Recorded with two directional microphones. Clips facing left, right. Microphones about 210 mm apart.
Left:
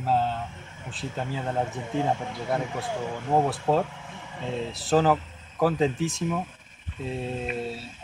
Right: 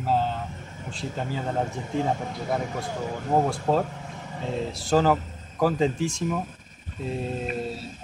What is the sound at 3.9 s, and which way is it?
Vehicle, 40° right (ahead or behind).